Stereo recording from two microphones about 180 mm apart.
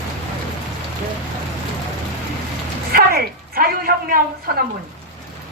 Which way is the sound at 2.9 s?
55° right (ahead or behind).